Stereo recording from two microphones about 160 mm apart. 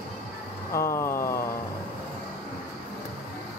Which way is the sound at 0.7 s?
15° left (ahead or behind).